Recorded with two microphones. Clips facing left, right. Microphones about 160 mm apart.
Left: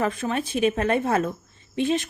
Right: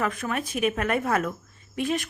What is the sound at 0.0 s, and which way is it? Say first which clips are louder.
A woman's voice: left 3 dB; 30° left (ahead or behind).